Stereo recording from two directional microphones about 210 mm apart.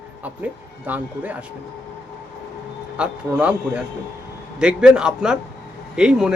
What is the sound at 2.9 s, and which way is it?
Speech, 5° right (ahead or behind).